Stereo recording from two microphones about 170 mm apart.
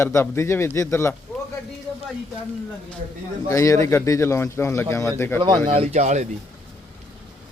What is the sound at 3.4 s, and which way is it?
Speech, 20° left (ahead or behind).